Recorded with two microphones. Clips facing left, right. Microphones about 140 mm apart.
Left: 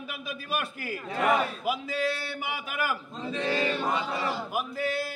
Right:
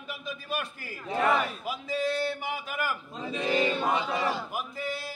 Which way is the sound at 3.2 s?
15° right (ahead or behind).